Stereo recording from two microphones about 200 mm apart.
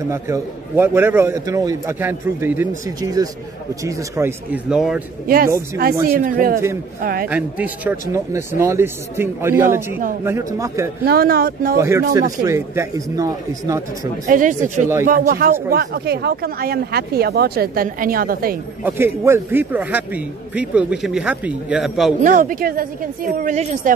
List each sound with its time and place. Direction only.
0.1 s a man's voice: 15° right (ahead or behind)
5.2 s speech: 45° right (ahead or behind)
7.2 s a man's voice: 5° right (ahead or behind)
11.1 s speech: 50° right (ahead or behind)
11.8 s a man's voice: 15° right (ahead or behind)
14.2 s a woman's voice: 40° right (ahead or behind)
18.9 s a man's voice: 10° right (ahead or behind)
22.2 s a woman's voice: 40° right (ahead or behind)